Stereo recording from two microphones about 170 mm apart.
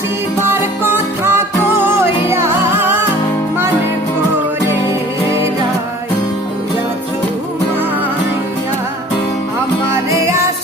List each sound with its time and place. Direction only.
0.4 s music: 15° right (ahead or behind)
2.3 s music: 15° right (ahead or behind)
9.9 s music: 15° right (ahead or behind)